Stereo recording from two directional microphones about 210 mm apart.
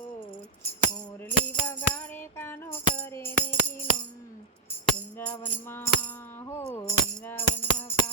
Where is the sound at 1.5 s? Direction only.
5° left (ahead or behind).